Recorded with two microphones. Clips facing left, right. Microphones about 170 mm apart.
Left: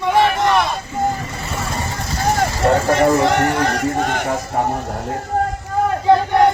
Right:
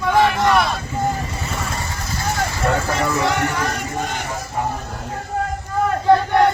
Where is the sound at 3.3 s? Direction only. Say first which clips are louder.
Left 5 dB; 70° left (ahead or behind).